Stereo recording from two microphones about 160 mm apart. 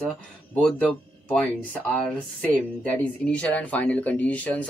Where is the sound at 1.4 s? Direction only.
5° left (ahead or behind).